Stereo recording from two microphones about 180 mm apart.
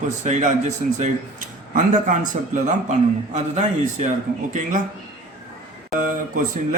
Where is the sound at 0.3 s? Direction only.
40° right (ahead or behind).